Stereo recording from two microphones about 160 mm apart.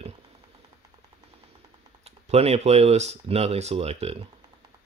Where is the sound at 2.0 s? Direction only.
40° right (ahead or behind).